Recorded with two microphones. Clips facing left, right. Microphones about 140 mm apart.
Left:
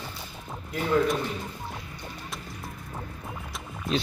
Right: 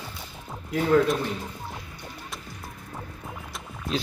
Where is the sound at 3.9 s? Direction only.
Centre (ahead or behind).